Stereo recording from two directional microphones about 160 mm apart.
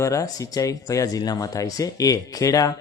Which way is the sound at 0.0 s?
20° left (ahead or behind).